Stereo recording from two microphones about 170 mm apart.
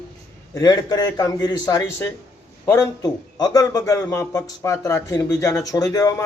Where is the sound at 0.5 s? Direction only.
25° left (ahead or behind).